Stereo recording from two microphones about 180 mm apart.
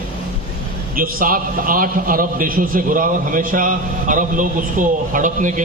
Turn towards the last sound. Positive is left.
turn(degrees=-45)  # may be behind; listen again after turning